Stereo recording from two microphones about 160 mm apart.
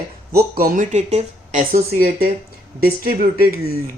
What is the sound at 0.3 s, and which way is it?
Speech, 65° right (ahead or behind).